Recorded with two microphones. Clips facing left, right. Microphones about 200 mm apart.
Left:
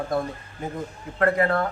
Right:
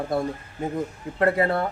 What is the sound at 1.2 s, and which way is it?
Speech, 25° right (ahead or behind).